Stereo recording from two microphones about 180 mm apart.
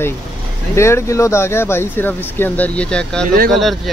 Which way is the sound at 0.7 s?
15° left (ahead or behind).